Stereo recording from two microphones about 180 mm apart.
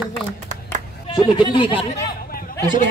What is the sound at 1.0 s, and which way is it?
Speech, 25° left (ahead or behind).